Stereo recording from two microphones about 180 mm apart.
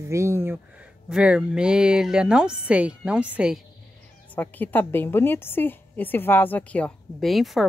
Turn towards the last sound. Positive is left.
turn(degrees=0)  # may be behind; listen again after turning